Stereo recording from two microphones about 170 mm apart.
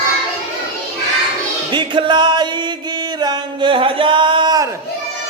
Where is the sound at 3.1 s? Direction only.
25° right (ahead or behind).